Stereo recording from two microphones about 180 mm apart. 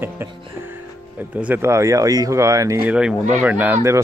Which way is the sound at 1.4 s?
10° right (ahead or behind).